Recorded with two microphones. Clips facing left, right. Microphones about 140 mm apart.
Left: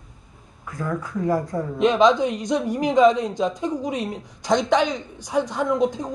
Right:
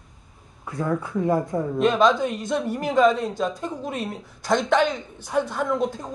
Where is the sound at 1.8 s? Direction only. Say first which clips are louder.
Left 3 dB; 20° left (ahead or behind).